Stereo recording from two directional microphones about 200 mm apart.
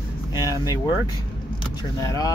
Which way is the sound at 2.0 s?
15° left (ahead or behind).